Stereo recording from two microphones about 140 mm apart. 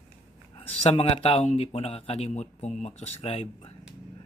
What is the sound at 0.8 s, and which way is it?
Speech, 45° left (ahead or behind).